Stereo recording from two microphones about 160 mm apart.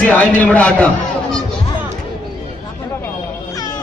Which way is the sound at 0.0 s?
10° left (ahead or behind).